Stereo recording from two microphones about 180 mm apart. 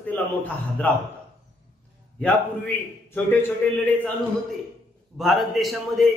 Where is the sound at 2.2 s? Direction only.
10° left (ahead or behind).